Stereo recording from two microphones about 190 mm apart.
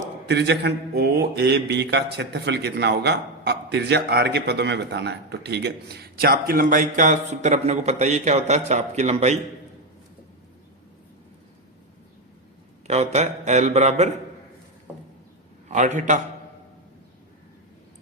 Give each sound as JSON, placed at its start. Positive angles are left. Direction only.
{"t": 0.3, "sound": "speech", "side_deg": -65}
{"t": 12.9, "sound": "speech", "side_deg": -35}
{"t": 14.9, "sound": "a sound", "side_deg": -5}
{"t": 16.0, "sound": "speech", "side_deg": -40}